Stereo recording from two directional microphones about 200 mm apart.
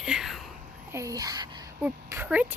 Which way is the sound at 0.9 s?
15° right (ahead or behind).